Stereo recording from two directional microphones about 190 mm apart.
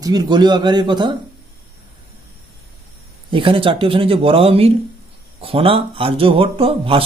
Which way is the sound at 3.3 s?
25° right (ahead or behind).